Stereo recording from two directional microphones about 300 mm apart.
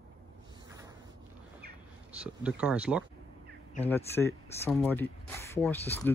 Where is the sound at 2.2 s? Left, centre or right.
Centre.